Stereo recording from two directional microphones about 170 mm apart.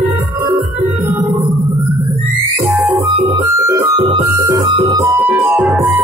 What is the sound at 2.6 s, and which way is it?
Music, 10° right (ahead or behind).